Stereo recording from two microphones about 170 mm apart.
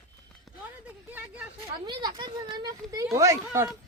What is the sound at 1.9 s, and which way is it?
Speech, 30° right (ahead or behind).